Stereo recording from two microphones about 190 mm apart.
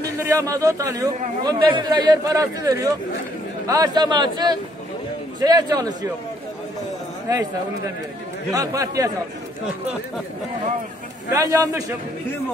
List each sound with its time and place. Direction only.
0.3 s a man's voice: 15° right (ahead or behind)
8.5 s a man's voice: 15° right (ahead or behind)
11.3 s a man's voice: 20° right (ahead or behind)